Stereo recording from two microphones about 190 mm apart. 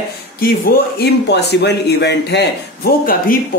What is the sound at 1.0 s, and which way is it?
Speech, 60° left (ahead or behind).